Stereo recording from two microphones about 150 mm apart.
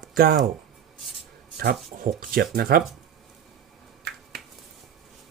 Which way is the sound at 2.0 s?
70° right (ahead or behind).